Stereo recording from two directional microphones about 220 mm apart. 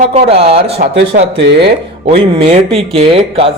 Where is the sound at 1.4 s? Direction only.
50° right (ahead or behind).